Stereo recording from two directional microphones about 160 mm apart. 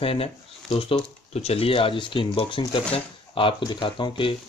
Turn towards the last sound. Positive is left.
turn(degrees=30)  # may be behind; listen again after turning